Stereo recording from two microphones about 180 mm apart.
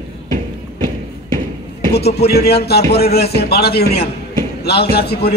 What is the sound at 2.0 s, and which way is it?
A man's voice, 60° left (ahead or behind).